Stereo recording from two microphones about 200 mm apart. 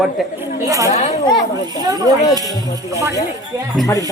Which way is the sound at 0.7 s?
15° right (ahead or behind).